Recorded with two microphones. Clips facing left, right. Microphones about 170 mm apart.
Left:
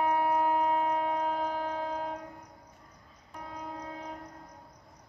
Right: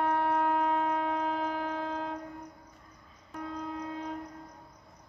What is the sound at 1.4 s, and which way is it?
Shofar, 40° left (ahead or behind).